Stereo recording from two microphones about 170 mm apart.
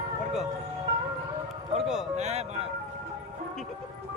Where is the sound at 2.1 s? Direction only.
40° right (ahead or behind).